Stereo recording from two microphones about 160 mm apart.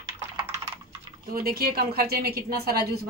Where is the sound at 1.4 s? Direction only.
70° right (ahead or behind).